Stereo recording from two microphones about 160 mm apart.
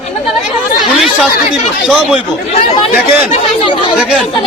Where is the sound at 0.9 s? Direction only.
5° right (ahead or behind).